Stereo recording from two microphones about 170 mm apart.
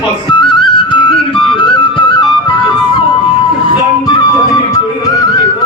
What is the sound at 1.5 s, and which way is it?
Flute, 30° left (ahead or behind).